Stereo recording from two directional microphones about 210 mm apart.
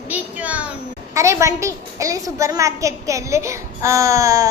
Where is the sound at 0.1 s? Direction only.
5° right (ahead or behind).